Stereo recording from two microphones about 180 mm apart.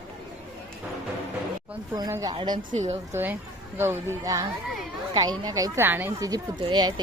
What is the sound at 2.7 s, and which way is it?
Speech, 40° right (ahead or behind).